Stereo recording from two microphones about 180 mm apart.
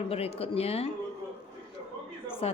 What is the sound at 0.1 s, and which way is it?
Speech, 35° left (ahead or behind).